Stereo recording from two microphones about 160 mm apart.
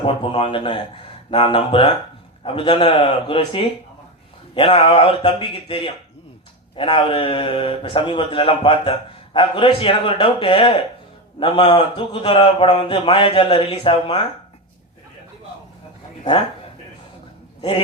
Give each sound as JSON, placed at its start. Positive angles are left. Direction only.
{"t": 0.0, "sound": "a man's voice", "side_deg": 35}